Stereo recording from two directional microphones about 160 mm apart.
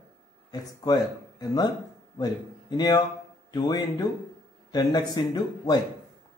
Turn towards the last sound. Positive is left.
turn(degrees=25)  # may be behind; listen again after turning